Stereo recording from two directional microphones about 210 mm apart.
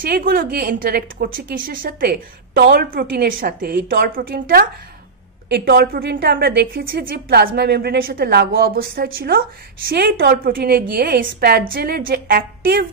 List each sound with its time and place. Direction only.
0.0 s a woman's voice: 45° right (ahead or behind)